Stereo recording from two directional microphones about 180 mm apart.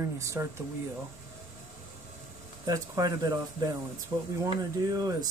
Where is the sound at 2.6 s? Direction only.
20° right (ahead or behind).